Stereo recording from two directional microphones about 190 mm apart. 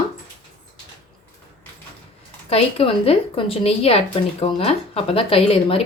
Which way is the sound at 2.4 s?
30° left (ahead or behind).